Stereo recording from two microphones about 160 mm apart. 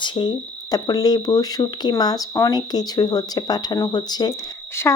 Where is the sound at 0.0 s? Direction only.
30° left (ahead or behind).